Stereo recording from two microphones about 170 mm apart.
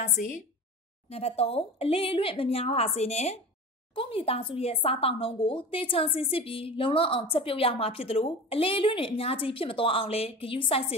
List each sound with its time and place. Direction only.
1.1 s speech: 35° left (ahead or behind)